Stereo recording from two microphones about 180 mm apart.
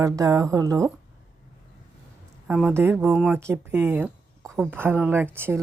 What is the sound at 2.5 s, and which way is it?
Speech, centre (ahead or behind).